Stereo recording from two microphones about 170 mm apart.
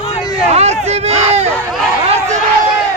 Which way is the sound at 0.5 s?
40° right (ahead or behind).